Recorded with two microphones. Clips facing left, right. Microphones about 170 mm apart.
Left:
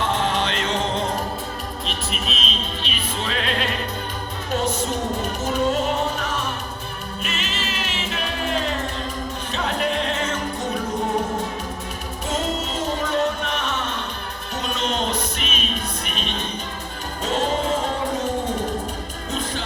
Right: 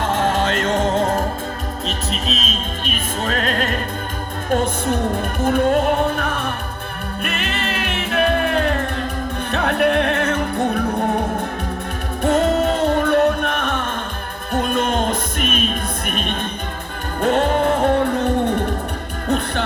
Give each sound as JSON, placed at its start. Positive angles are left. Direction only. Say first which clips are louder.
{"t": 0.0, "sound": "music", "louder": "right 4 dB", "side_deg": -50}
{"t": 12.2, "sound": "music", "louder": "right 10 dB", "side_deg": -60}